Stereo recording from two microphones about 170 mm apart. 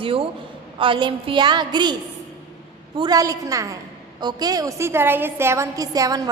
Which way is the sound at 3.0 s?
20° right (ahead or behind).